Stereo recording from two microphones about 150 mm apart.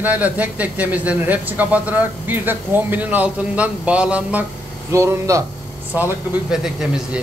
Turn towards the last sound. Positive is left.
turn(degrees=-5)  # may be behind; listen again after turning